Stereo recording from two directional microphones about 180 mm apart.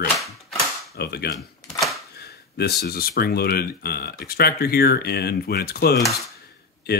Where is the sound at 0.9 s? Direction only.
60° left (ahead or behind).